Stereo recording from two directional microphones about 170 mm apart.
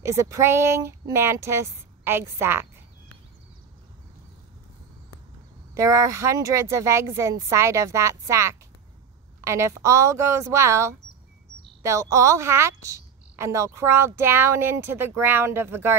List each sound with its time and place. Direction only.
0.0 s a woman's voice: 15° right (ahead or behind)
5.8 s a woman's voice: 20° right (ahead or behind)